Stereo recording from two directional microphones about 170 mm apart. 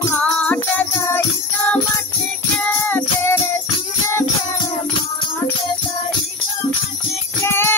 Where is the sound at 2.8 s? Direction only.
10° left (ahead or behind).